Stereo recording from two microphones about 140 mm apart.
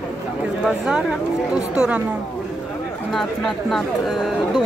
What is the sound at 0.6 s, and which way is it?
Speech, 5° right (ahead or behind).